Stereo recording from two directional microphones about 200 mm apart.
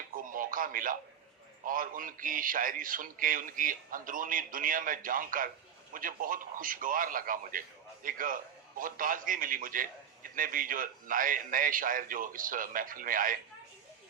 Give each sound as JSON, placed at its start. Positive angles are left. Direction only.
{"t": 0.2, "sound": "radio", "side_deg": -45}
{"t": 1.6, "sound": "a man's voice", "side_deg": -45}